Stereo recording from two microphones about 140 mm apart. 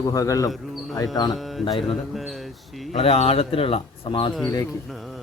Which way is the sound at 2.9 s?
45° left (ahead or behind).